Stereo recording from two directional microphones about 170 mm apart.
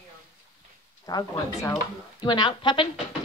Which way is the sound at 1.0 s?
20° left (ahead or behind).